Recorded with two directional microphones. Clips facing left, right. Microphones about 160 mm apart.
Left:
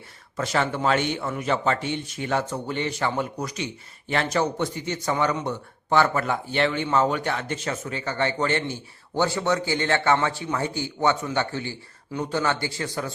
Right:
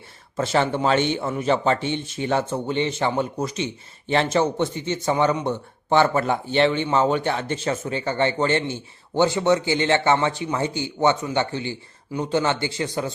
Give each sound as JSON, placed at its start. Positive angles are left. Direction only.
{"t": 0.3, "sound": "a man's voice", "side_deg": -25}